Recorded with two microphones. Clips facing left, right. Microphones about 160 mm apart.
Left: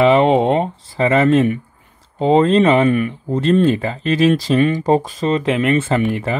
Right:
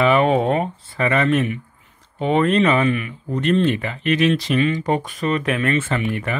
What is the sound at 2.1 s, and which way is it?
Speech, 30° left (ahead or behind).